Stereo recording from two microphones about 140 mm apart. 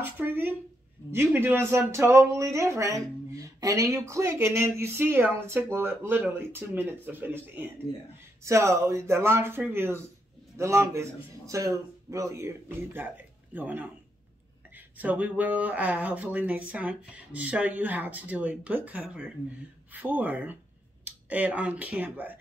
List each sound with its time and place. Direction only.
0.0 s a man's voice: 15° right (ahead or behind)
15.0 s speech: 10° right (ahead or behind)